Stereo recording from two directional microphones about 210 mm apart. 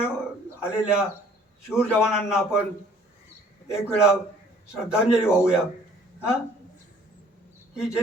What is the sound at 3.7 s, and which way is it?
A man's voice, 5° right (ahead or behind).